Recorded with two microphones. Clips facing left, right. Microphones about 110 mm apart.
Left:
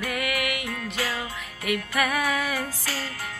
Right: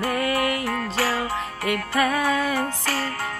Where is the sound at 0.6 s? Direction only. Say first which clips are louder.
Right 6 dB; 70° right (ahead or behind).